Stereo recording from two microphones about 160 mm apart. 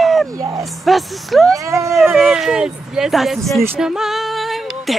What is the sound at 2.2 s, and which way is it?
Speech, 5° right (ahead or behind).